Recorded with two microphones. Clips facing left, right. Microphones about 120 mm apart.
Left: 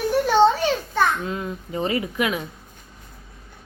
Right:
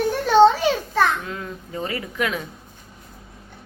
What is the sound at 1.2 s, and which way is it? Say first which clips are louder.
Speech: left 4 dB; 20° left (ahead or behind).